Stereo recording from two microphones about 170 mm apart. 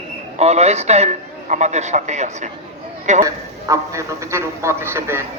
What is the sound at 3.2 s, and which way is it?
A man's voice, 20° right (ahead or behind).